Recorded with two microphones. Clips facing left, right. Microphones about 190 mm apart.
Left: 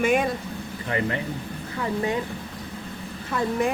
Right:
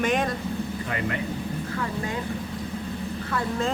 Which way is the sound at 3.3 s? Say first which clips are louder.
Left 4 dB; 15° left (ahead or behind).